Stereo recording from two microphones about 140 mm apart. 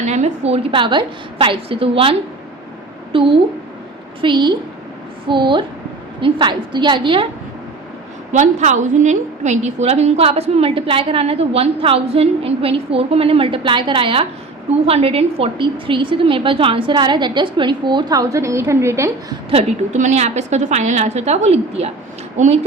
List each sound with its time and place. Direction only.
0.0 s a woman's voice: 55° right (ahead or behind); by 7.3 s 35° right (ahead or behind)
8.3 s a woman's voice: 60° right (ahead or behind); by 19.4 s 20° right (ahead or behind)
19.5 s a woman's voice: 45° right (ahead or behind)